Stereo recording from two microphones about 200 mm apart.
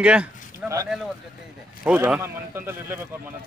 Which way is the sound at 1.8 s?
10° right (ahead or behind).